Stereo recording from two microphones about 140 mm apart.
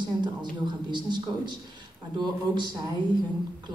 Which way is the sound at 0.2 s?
35° right (ahead or behind).